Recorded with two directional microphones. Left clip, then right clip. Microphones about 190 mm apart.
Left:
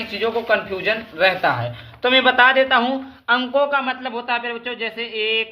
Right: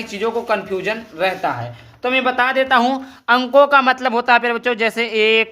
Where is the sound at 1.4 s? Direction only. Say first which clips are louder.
Left 2 dB; 5° right (ahead or behind).